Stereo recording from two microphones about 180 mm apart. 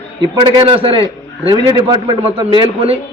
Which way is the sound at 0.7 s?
30° right (ahead or behind).